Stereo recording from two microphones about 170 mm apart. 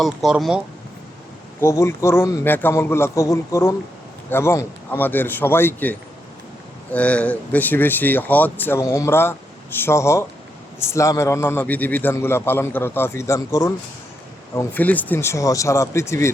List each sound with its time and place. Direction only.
0.0 s speech: centre (ahead or behind)
1.6 s a man's voice: 15° left (ahead or behind)